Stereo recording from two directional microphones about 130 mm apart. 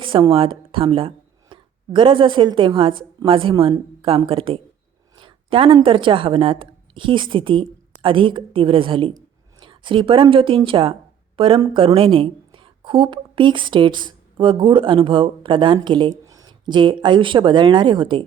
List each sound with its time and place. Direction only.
0.0 s a woman's voice: 40° right (ahead or behind)